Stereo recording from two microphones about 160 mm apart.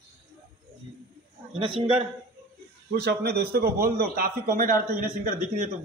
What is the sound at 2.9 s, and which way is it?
A man's voice, 85° right.